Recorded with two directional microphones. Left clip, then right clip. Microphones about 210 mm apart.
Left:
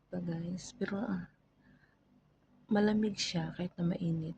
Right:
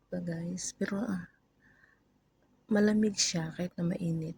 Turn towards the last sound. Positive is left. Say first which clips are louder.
# right 2 dB
turn(degrees=-15)  # may be behind; listen again after turning